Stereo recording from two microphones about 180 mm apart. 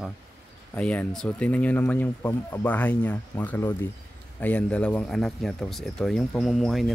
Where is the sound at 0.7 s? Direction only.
10° left (ahead or behind).